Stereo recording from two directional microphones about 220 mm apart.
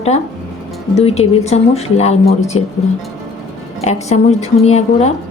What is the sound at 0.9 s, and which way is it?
A woman's voice, 30° left (ahead or behind).